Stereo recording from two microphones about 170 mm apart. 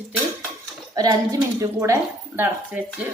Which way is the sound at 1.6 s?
15° right (ahead or behind).